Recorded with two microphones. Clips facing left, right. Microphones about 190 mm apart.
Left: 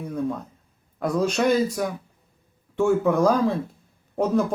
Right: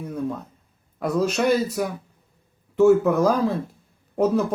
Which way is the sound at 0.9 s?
5° right (ahead or behind).